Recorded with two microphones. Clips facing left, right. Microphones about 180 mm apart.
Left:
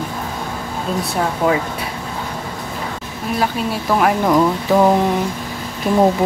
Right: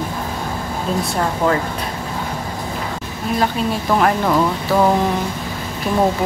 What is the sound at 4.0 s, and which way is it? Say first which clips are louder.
Speech: left 3 dB; 10° left (ahead or behind).